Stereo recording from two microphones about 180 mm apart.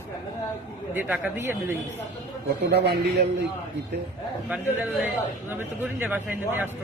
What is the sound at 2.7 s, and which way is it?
Speech, 65° right (ahead or behind).